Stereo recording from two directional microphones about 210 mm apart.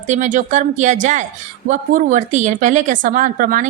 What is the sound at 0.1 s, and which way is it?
A woman's voice, 35° right (ahead or behind).